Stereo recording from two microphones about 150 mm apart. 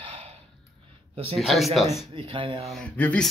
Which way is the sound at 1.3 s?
Centre (ahead or behind).